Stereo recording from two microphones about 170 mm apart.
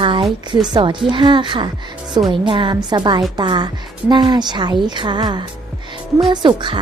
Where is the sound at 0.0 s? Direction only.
30° right (ahead or behind).